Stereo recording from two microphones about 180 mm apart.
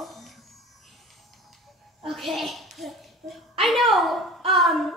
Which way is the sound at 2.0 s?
Centre (ahead or behind).